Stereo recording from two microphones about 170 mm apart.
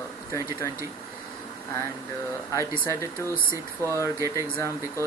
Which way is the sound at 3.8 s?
15° left (ahead or behind).